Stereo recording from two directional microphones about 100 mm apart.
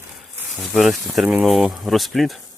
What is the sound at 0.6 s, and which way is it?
Speech, centre (ahead or behind).